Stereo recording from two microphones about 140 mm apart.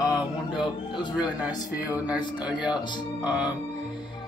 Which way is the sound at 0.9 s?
5° right (ahead or behind).